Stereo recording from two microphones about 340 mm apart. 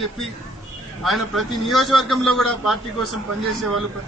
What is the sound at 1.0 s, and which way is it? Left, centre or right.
A man's voice, centre.